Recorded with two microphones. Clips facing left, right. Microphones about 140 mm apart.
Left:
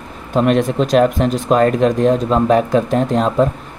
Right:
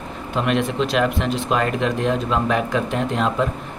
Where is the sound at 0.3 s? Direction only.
40° left (ahead or behind).